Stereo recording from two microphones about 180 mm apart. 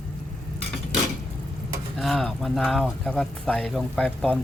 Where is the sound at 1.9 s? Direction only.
Centre (ahead or behind).